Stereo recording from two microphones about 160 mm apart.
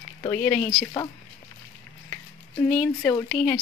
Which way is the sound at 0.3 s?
10° left (ahead or behind).